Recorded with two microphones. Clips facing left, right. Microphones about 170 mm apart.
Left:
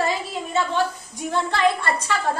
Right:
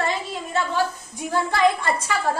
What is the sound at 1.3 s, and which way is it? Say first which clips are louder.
Speech: right 1 dB; 10° right (ahead or behind).